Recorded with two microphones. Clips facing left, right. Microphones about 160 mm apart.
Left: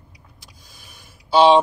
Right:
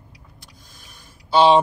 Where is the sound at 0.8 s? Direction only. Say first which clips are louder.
Even; centre (ahead or behind).